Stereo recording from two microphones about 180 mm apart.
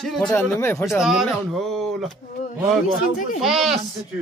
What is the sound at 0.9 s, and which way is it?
A man's voice, centre (ahead or behind).